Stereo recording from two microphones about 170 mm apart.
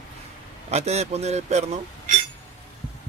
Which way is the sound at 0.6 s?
40° right (ahead or behind).